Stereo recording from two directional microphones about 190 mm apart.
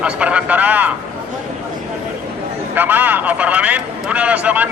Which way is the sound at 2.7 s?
10° right (ahead or behind).